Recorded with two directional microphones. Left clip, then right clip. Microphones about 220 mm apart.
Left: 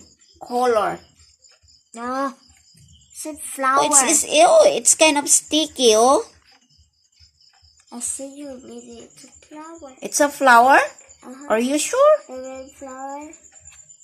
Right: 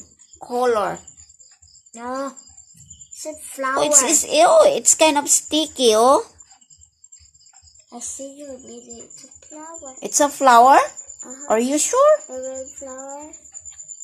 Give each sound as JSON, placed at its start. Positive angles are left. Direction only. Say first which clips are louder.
{"t": 0.6, "sound": "speech", "louder": "left 1 dB", "side_deg": 10}
{"t": 1.9, "sound": "a child's voice", "louder": "left 3 dB", "side_deg": 25}
{"t": 3.8, "sound": "a woman's voice", "louder": "even", "side_deg": 0}
{"t": 7.9, "sound": "speech", "louder": "left 1 dB", "side_deg": 35}
{"t": 9.9, "sound": "a woman's voice", "louder": "even", "side_deg": 0}